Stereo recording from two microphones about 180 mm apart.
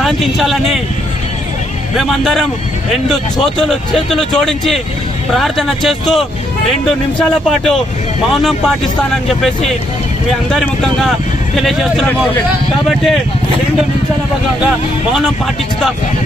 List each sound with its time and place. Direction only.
0.0 s speech: centre (ahead or behind)
2.0 s speech: centre (ahead or behind)